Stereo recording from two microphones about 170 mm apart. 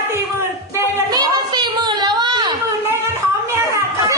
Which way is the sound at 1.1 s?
25° right (ahead or behind).